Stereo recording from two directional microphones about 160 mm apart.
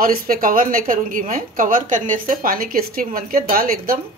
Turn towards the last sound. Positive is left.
turn(degrees=-65)  # may be behind; listen again after turning